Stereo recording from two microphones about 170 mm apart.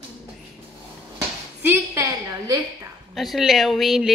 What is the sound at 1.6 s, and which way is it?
A woman's voice, 15° right (ahead or behind).